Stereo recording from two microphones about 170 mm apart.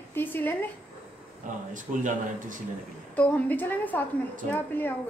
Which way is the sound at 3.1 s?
10° left (ahead or behind).